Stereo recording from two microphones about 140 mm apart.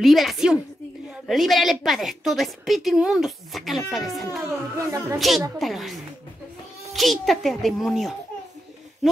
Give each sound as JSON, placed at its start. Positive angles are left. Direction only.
{"t": 0.0, "sound": "a woman's voice", "side_deg": 0}
{"t": 4.7, "sound": "a woman's voice", "side_deg": -20}
{"t": 5.6, "sound": "a woman's voice", "side_deg": 0}